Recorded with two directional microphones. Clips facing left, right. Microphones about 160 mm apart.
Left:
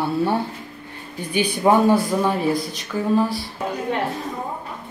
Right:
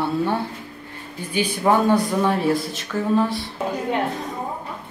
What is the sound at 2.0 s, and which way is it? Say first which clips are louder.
Speech: even; centre (ahead or behind).